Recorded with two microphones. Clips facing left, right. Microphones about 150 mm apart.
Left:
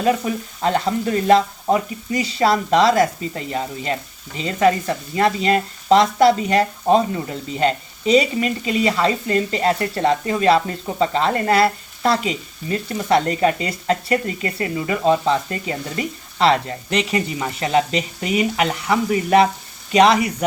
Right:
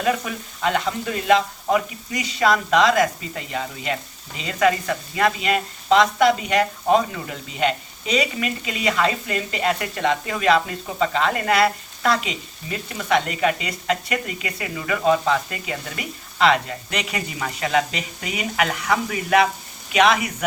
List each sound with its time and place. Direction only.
0.0 s speech: 35° left (ahead or behind)